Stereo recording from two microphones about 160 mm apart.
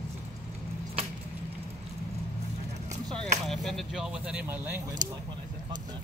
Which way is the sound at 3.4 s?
Centre (ahead or behind).